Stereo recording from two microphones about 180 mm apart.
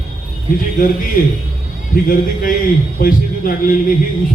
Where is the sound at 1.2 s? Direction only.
55° left (ahead or behind).